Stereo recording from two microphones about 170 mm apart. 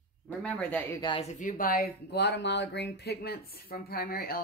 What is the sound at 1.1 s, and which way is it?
Speech, 25° left (ahead or behind).